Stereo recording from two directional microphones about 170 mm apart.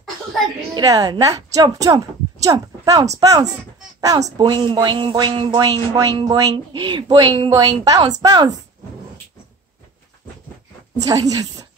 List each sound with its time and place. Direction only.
0.7 s speech: 25° right (ahead or behind)
11.0 s speech: 20° right (ahead or behind)